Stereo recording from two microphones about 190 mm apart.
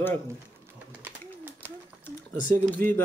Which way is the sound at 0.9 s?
10° right (ahead or behind).